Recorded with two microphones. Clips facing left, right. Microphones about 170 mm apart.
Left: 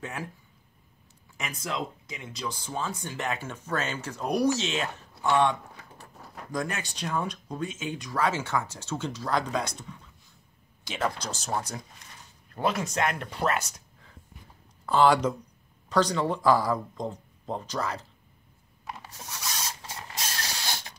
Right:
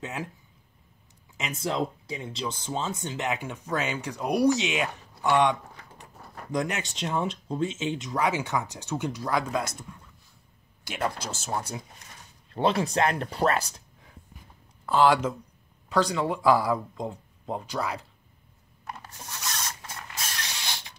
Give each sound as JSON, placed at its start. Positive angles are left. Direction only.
{"t": 0.0, "sound": "speech", "side_deg": -20}
{"t": 1.3, "sound": "speech", "side_deg": -20}
{"t": 6.1, "sound": "a sound", "side_deg": 0}
{"t": 6.5, "sound": "speech", "side_deg": -20}
{"t": 12.5, "sound": "speech", "side_deg": -30}
{"t": 14.9, "sound": "speech", "side_deg": -5}
{"t": 18.9, "sound": "rub", "side_deg": 0}
{"t": 19.8, "sound": "mechanisms", "side_deg": 30}